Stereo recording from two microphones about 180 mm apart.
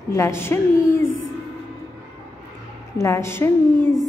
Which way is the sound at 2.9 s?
15° left (ahead or behind).